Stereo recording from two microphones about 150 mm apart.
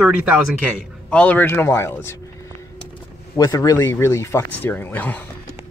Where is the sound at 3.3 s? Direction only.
25° left (ahead or behind).